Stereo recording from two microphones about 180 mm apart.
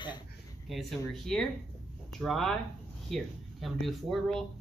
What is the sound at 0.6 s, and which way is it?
Speech, centre (ahead or behind).